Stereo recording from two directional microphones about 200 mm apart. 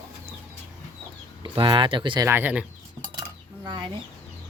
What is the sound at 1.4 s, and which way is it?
Speech, 25° right (ahead or behind).